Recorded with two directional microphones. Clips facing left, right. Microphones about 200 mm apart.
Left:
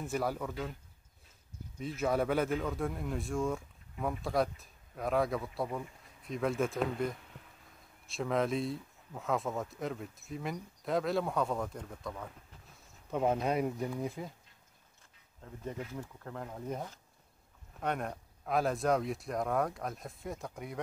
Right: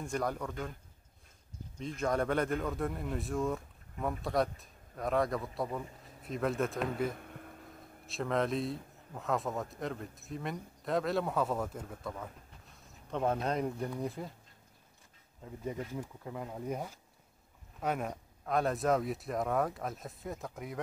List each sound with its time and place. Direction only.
0.0 s speech: 5° left (ahead or behind)
1.8 s speech: 5° left (ahead or behind)
7.2 s a sound: 55° right (ahead or behind)
8.1 s speech: centre (ahead or behind)
12.8 s speech: 10° left (ahead or behind)
15.9 s speech: 10° right (ahead or behind)